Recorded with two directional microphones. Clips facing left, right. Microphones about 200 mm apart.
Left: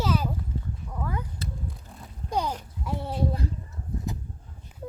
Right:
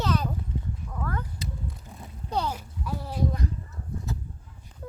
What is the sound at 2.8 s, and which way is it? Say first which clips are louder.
Speech: left 1 dB; 25° left (ahead or behind).